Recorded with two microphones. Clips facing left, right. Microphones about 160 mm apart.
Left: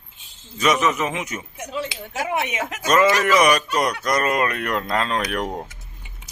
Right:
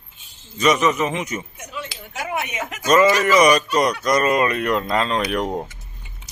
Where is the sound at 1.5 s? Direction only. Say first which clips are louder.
Left 5 dB; 25° left (ahead or behind).